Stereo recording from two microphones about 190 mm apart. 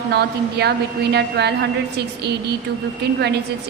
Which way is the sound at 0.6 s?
60° right (ahead or behind).